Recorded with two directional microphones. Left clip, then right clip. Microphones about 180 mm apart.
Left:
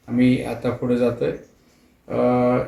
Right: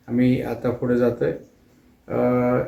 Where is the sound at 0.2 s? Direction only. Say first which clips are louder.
Left 2 dB; 5° right (ahead or behind).